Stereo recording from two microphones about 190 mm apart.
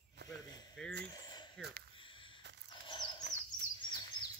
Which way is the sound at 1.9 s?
25° left (ahead or behind).